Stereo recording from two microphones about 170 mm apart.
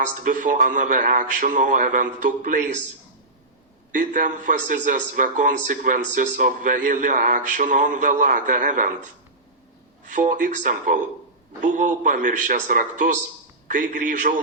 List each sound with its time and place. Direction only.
0.1 s a man's voice: 50° right (ahead or behind)
3.9 s a man's voice: 50° right (ahead or behind)
10.1 s a man's voice: 50° right (ahead or behind)